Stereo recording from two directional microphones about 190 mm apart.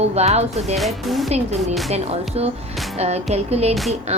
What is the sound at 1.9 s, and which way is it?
Music, 35° right (ahead or behind).